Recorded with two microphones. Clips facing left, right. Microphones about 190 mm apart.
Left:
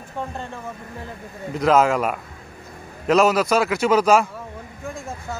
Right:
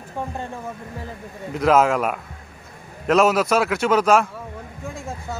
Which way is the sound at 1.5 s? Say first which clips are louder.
Even; 5° right (ahead or behind).